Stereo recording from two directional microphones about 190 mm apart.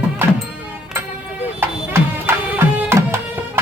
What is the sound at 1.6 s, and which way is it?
Music, 10° right (ahead or behind).